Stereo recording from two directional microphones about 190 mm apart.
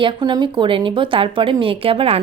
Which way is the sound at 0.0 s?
25° right (ahead or behind).